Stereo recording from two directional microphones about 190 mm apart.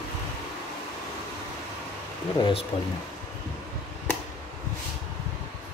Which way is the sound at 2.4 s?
25° left (ahead or behind).